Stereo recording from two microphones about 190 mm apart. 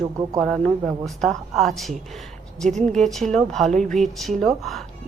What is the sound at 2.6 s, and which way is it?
Speech, 40° right (ahead or behind).